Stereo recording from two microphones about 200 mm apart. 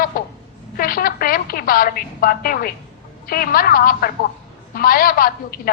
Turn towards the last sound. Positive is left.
turn(degrees=45)  # may be behind; listen again after turning